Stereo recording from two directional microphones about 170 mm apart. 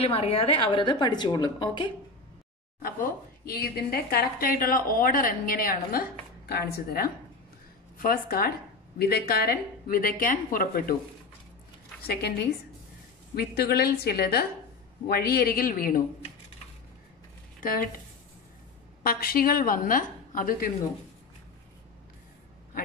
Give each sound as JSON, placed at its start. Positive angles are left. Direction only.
{"t": 0.0, "sound": "a woman's voice", "side_deg": 35}
{"t": 2.8, "sound": "speech", "side_deg": 60}
{"t": 12.1, "sound": "a woman's voice", "side_deg": 70}
{"t": 17.6, "sound": "speech", "side_deg": 55}
{"t": 19.0, "sound": "speech", "side_deg": 60}